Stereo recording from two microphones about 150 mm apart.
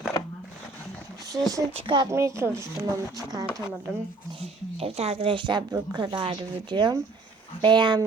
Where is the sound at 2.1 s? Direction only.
20° right (ahead or behind).